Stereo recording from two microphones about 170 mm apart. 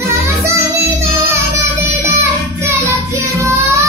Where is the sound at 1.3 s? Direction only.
15° right (ahead or behind).